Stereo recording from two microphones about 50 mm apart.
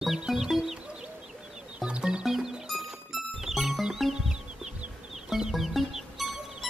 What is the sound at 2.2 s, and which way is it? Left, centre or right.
Music, centre.